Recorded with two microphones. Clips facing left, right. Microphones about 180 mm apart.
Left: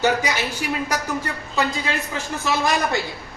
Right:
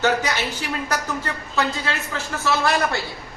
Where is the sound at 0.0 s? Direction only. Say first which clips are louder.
Even; 10° left (ahead or behind).